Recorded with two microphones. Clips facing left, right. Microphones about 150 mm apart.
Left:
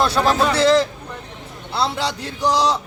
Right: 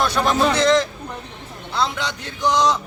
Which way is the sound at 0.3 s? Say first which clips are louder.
Even; 30° left (ahead or behind).